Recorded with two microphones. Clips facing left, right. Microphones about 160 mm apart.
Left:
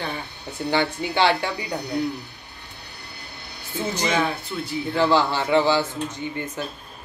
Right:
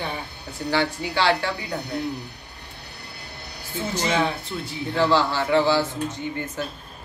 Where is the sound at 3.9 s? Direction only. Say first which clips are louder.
Right 1 dB; 15° left (ahead or behind).